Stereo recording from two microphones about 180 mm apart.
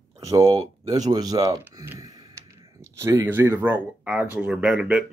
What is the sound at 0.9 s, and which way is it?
Speech, 20° right (ahead or behind).